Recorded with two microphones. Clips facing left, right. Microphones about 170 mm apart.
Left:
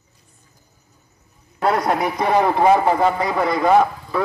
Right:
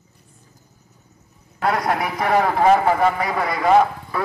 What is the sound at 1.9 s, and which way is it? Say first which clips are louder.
A man's voice: left 1 dB; 20° left (ahead or behind).